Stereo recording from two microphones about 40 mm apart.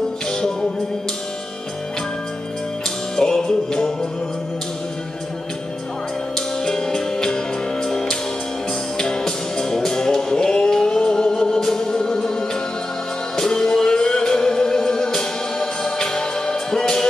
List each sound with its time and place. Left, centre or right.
0.3 s music: centre
3.2 s music: centre
6.3 s music: centre